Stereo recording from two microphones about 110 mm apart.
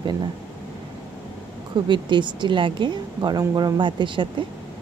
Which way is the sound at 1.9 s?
45° right (ahead or behind).